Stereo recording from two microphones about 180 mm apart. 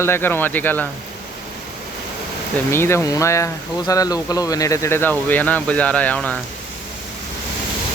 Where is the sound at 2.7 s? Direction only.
15° left (ahead or behind).